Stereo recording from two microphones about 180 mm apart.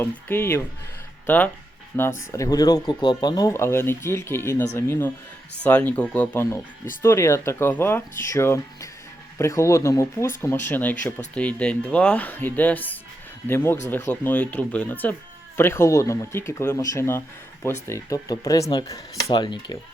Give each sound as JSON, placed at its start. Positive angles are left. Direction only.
{"t": 0.0, "sound": "speech", "side_deg": 10}
{"t": 2.0, "sound": "speech", "side_deg": 15}